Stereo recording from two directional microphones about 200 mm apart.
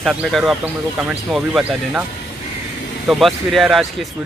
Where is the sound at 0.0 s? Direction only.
Centre (ahead or behind).